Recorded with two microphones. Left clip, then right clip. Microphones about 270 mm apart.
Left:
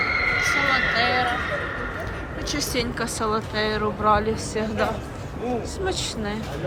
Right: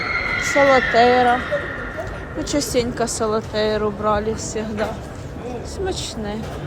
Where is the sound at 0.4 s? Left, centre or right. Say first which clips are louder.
Right 6 dB; right.